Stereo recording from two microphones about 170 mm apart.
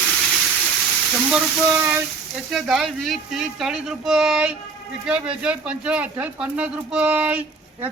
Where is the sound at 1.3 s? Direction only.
10° right (ahead or behind).